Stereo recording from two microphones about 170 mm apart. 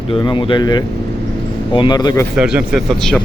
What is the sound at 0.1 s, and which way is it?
Speech, 30° left (ahead or behind).